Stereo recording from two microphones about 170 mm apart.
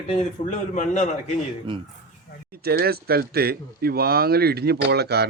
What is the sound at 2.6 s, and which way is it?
Speech, 65° right (ahead or behind).